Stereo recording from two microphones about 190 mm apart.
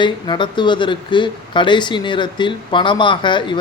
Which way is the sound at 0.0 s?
25° left (ahead or behind).